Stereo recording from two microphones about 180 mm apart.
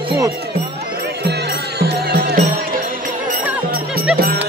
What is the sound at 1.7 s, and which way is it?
Music, 60° right (ahead or behind).